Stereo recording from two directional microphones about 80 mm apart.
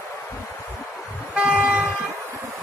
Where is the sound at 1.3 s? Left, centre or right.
Centre.